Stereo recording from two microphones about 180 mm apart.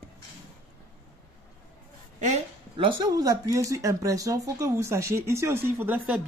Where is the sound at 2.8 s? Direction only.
20° right (ahead or behind).